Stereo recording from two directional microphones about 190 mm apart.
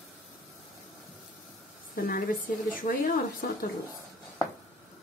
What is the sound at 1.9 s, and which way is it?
Speech, 50° left (ahead or behind).